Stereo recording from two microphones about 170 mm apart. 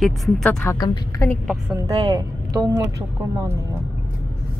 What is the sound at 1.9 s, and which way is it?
Speech, 35° right (ahead or behind).